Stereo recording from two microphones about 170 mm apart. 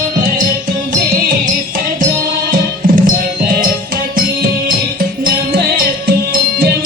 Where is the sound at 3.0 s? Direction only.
60° right (ahead or behind).